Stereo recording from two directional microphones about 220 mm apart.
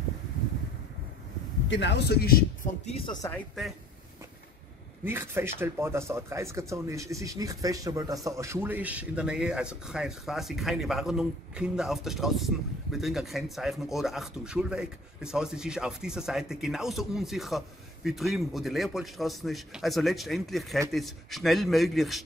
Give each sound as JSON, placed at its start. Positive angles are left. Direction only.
{"t": 1.7, "sound": "speech", "side_deg": 50}
{"t": 3.3, "sound": "speech", "side_deg": 0}
{"t": 5.0, "sound": "speech", "side_deg": -10}